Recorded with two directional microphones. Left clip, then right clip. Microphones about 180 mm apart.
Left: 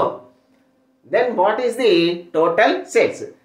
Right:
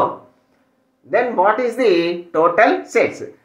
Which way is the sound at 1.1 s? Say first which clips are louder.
Right 1 dB; centre (ahead or behind).